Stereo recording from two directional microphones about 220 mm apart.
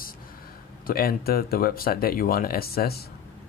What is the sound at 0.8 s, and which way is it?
Speech, 45° left (ahead or behind).